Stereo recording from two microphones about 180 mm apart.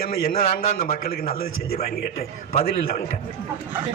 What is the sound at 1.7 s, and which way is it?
Speech, 35° left (ahead or behind).